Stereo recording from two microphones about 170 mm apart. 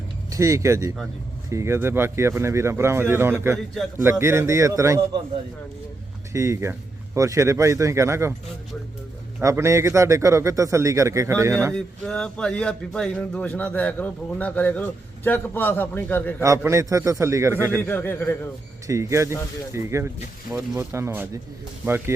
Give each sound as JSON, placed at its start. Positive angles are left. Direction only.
{"t": 0.3, "sound": "a man's voice", "side_deg": -20}
{"t": 6.3, "sound": "a man's voice", "side_deg": -15}
{"t": 9.4, "sound": "a man's voice", "side_deg": -15}
{"t": 11.7, "sound": "speech", "side_deg": 5}
{"t": 16.4, "sound": "a man's voice", "side_deg": -15}
{"t": 17.7, "sound": "speech", "side_deg": 10}
{"t": 18.9, "sound": "a man's voice", "side_deg": -15}